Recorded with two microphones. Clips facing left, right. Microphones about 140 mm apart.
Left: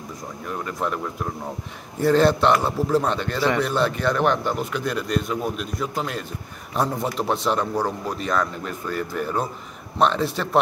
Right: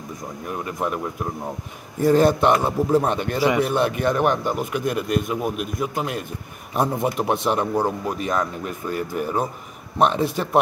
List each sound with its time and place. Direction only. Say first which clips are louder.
0.5 s a man's voice: right 1 dB; 10° right (ahead or behind)